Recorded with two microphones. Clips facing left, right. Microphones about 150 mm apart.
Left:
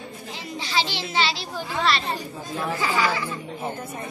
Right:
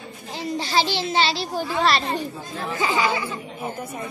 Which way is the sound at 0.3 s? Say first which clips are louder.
Right 6 dB; 40° right (ahead or behind).